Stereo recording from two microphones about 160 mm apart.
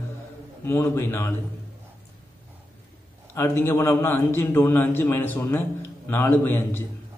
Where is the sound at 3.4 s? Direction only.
15° left (ahead or behind).